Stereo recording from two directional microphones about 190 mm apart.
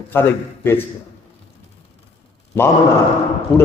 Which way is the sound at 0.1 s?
10° left (ahead or behind).